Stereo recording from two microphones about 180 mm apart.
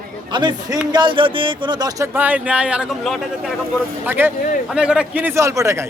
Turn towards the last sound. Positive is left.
turn(degrees=-15)  # may be behind; listen again after turning